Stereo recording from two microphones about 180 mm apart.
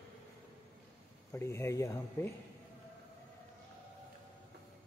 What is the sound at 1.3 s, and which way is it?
Speech, 15° left (ahead or behind).